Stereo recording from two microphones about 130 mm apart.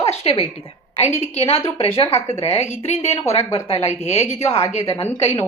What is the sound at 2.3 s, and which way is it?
Speech, 55° left (ahead or behind).